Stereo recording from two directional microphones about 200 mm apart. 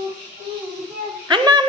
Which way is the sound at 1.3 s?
20° right (ahead or behind).